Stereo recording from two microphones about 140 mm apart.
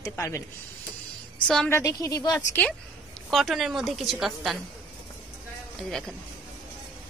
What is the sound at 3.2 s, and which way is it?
Speech, centre (ahead or behind).